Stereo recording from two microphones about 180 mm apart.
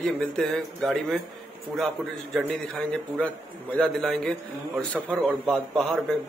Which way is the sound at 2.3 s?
5° left (ahead or behind).